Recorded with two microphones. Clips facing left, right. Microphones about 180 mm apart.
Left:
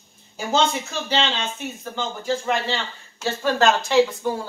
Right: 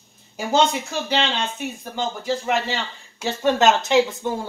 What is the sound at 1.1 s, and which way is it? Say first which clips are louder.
Speech: even; 15° right (ahead or behind).